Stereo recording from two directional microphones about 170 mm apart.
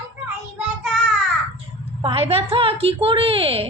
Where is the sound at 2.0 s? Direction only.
35° right (ahead or behind).